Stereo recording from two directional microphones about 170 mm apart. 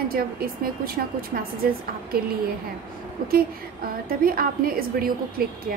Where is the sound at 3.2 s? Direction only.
60° right (ahead or behind).